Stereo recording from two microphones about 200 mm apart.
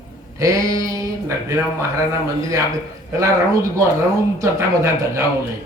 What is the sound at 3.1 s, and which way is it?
Speech, 15° right (ahead or behind).